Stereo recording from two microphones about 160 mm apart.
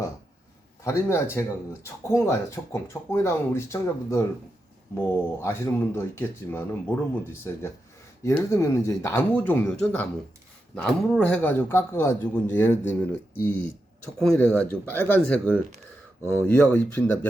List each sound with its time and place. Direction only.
0.9 s speech: 15° left (ahead or behind)